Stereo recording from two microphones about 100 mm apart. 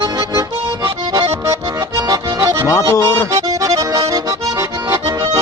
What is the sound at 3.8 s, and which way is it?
Accordion, 35° right (ahead or behind).